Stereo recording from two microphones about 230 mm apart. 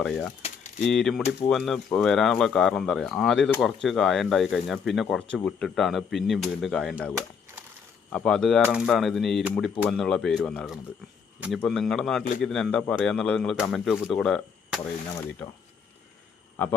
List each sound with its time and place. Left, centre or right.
0.0 s speech: centre
0.4 s a sound: left
0.9 s speech: centre